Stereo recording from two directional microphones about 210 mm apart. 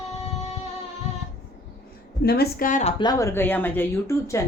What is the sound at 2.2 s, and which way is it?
Speech, 50° left (ahead or behind).